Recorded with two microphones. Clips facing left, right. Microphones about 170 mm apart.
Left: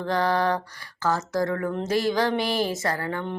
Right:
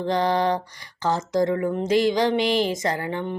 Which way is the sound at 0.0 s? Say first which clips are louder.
Right 2 dB; 20° right (ahead or behind).